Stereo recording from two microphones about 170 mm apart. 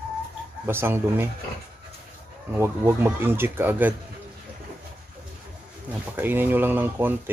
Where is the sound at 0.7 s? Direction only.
15° right (ahead or behind).